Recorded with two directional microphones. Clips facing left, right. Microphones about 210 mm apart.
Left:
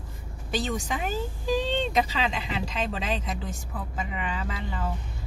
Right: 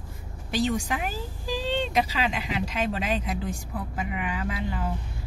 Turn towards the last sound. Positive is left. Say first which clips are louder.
# right 3 dB
turn(degrees=-10)  # may be behind; listen again after turning